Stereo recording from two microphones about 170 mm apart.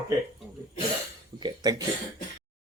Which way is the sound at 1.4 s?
25° right (ahead or behind).